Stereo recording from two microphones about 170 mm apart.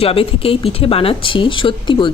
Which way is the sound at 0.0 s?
35° left (ahead or behind).